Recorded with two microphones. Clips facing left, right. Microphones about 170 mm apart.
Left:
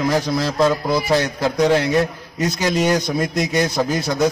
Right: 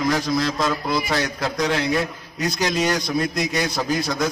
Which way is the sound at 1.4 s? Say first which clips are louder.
Left 6 dB; centre (ahead or behind).